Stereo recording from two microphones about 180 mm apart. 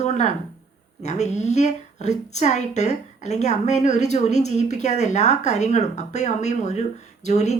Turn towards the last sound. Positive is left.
turn(degrees=40)  # may be behind; listen again after turning